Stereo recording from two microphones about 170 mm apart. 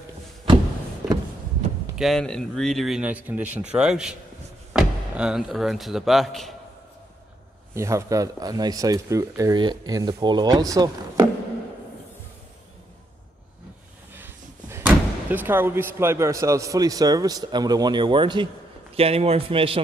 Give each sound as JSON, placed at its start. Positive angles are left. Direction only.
{"t": 2.0, "sound": "speech", "side_deg": 0}
{"t": 7.7, "sound": "speech", "side_deg": -15}
{"t": 14.1, "sound": "a man's voice", "side_deg": -10}